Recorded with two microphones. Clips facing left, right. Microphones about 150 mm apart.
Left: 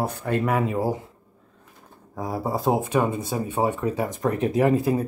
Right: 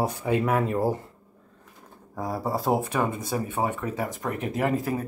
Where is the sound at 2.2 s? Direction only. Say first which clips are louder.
Left 1 dB; 20° left (ahead or behind).